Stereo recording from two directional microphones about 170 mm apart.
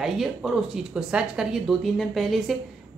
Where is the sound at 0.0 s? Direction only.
Centre (ahead or behind).